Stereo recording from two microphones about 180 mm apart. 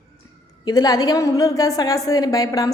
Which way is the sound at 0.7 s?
20° left (ahead or behind).